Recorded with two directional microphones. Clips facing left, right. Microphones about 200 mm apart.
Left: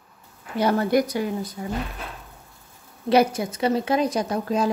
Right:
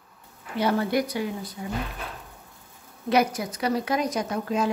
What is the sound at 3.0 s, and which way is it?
Speech, 30° left (ahead or behind).